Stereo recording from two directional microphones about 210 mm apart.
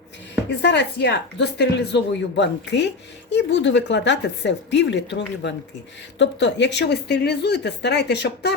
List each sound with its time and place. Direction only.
0.6 s a woman's voice: 55° left (ahead or behind)